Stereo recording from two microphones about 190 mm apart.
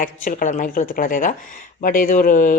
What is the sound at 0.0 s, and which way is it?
Speech, 45° left (ahead or behind).